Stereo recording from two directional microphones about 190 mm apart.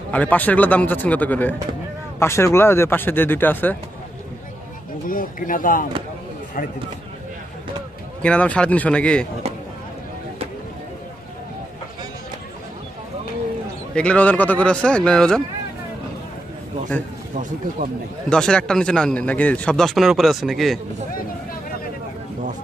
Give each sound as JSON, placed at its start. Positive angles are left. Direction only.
{"t": 0.1, "sound": "speech", "side_deg": 10}
{"t": 5.0, "sound": "speech", "side_deg": 45}
{"t": 8.2, "sound": "speech", "side_deg": 5}
{"t": 13.9, "sound": "speech", "side_deg": 5}
{"t": 17.3, "sound": "speech", "side_deg": -40}
{"t": 18.3, "sound": "speech", "side_deg": 5}